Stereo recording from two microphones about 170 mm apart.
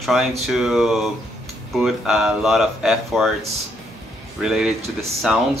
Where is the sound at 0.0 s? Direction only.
Centre (ahead or behind).